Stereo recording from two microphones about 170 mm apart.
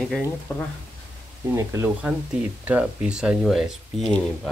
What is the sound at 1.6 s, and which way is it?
Speech, 20° right (ahead or behind).